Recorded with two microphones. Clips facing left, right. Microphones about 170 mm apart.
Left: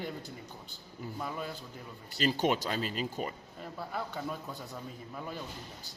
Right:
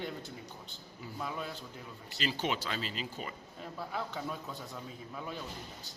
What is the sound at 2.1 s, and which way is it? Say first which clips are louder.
Speech: left 6 dB; 45° left (ahead or behind).